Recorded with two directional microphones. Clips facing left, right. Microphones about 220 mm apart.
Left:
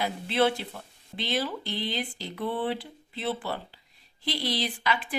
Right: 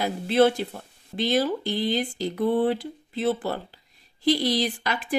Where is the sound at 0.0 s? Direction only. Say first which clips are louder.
Right 6 dB; 45° right (ahead or behind).